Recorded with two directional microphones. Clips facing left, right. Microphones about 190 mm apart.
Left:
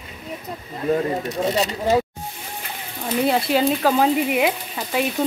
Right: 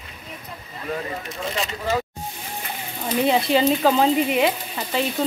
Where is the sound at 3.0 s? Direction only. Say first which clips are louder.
Even; 5° left (ahead or behind).